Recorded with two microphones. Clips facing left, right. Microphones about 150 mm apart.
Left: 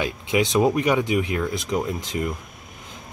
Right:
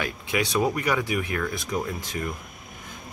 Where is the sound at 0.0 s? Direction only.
20° left (ahead or behind).